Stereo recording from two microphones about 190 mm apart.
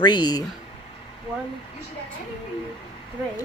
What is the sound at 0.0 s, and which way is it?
Speech, 20° left (ahead or behind).